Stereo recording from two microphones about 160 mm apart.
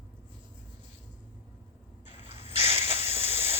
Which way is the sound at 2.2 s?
35° right (ahead or behind).